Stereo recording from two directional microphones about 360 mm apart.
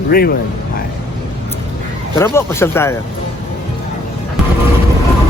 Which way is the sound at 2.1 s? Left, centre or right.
Centre.